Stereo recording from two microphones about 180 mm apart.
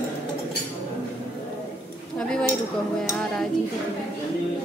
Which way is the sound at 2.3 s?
5° left (ahead or behind).